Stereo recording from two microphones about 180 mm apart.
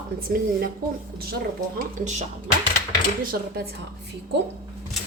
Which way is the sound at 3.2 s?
55° right (ahead or behind).